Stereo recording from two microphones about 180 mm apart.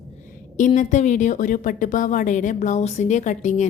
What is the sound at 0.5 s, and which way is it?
A woman's voice, 45° left (ahead or behind).